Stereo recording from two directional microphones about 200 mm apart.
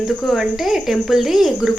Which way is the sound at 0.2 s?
Centre (ahead or behind).